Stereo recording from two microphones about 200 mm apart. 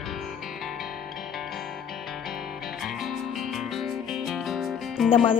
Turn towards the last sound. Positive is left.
turn(degrees=0)  # may be behind; listen again after turning